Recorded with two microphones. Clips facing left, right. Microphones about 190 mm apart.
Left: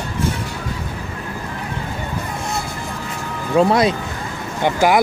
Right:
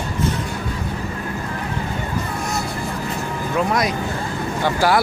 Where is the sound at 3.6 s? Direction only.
30° left (ahead or behind).